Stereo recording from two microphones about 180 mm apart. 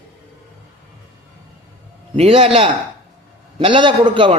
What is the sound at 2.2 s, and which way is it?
A man's voice, 35° right (ahead or behind).